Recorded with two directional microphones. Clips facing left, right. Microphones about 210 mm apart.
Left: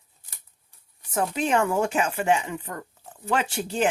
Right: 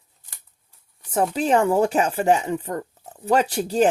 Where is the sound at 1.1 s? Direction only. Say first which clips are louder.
Right 4 dB; 35° right (ahead or behind).